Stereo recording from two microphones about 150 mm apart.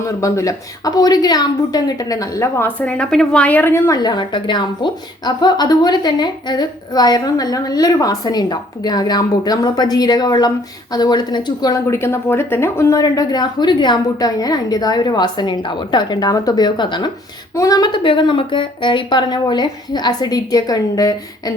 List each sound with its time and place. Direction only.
0.2 s a woman's voice: 20° left (ahead or behind)
2.8 s a woman's voice: 5° left (ahead or behind); by 21.5 s 25° left (ahead or behind)